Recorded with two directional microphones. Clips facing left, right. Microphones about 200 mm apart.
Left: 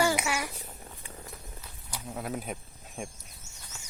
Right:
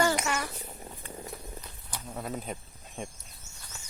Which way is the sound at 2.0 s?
5° left (ahead or behind).